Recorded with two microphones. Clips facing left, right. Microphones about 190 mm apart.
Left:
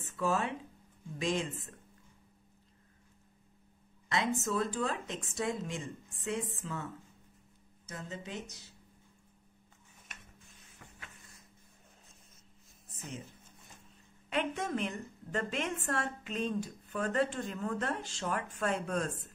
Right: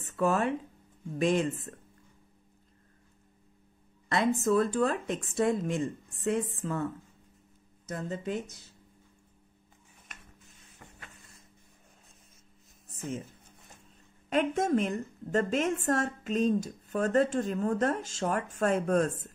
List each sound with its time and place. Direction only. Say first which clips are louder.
0.0 s speech: right 5 dB; 60° right (ahead or behind)
4.5 s speech: right 8 dB; 55° right (ahead or behind)
6.6 s a woman's voice: right 8 dB; 45° right (ahead or behind)
12.9 s a sound: right 8 dB; 50° right (ahead or behind)
14.3 s a woman's voice: right 7 dB; 45° right (ahead or behind)